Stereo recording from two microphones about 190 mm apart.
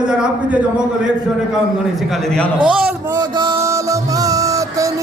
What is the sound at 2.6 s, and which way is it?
Music, 25° right (ahead or behind).